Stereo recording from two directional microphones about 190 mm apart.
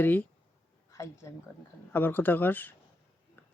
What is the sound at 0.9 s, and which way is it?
A woman's voice, 15° left (ahead or behind).